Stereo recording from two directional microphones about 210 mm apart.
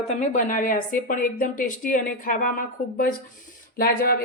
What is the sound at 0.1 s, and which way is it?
Speech, 35° left (ahead or behind).